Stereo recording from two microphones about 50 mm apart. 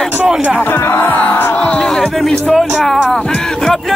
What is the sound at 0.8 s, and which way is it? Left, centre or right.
Music, left.